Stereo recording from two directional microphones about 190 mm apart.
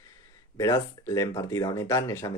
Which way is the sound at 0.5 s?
15° left (ahead or behind).